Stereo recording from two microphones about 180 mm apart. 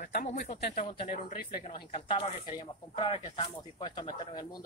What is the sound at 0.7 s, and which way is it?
Speech, 30° left (ahead or behind).